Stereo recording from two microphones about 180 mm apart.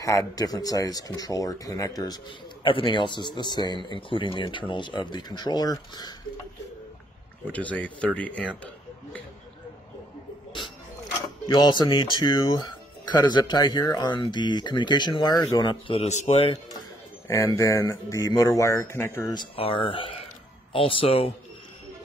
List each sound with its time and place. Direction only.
0.0 s speech: 20° left (ahead or behind)
7.5 s speech: 10° left (ahead or behind)
11.4 s speech: 25° left (ahead or behind)
17.3 s speech: 15° left (ahead or behind)
19.5 s speech: 30° left (ahead or behind)